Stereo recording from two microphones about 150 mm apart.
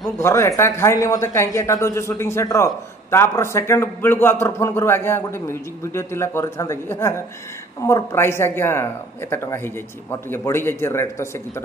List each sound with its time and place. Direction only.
0.2 s a man's voice: 20° left (ahead or behind)